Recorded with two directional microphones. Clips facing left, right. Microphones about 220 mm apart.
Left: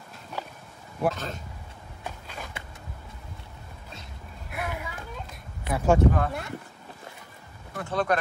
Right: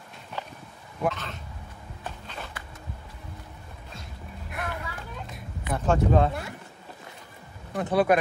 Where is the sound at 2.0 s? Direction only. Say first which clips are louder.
Even; 10° left (ahead or behind).